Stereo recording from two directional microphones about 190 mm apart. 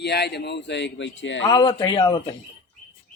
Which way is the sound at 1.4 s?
25° left (ahead or behind).